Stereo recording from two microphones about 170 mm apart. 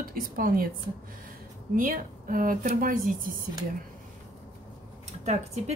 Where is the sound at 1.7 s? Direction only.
55° right (ahead or behind).